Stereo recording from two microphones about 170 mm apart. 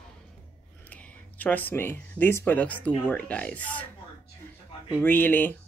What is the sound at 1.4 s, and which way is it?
Speech, 10° left (ahead or behind).